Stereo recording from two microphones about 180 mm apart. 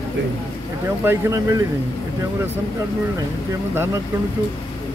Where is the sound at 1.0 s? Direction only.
15° right (ahead or behind).